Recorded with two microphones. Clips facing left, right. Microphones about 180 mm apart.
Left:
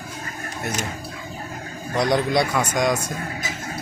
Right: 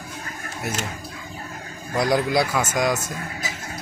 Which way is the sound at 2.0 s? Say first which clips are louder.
Even; centre (ahead or behind).